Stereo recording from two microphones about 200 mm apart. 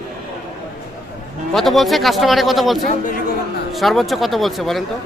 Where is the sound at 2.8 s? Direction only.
40° left (ahead or behind).